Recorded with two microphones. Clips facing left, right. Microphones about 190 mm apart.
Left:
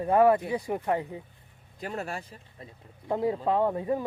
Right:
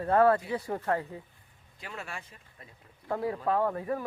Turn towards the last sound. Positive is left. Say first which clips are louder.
# left 3 dB
turn(degrees=20)  # may be behind; listen again after turning